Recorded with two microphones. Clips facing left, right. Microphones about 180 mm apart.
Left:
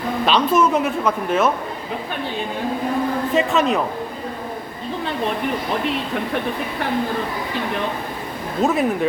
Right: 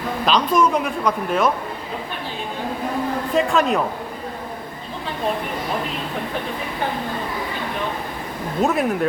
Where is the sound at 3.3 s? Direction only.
Centre (ahead or behind).